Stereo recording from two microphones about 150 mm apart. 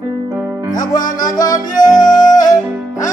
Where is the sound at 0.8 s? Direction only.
60° left (ahead or behind).